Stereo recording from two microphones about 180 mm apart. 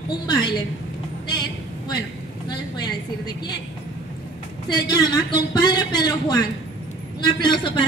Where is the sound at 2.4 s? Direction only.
20° left (ahead or behind).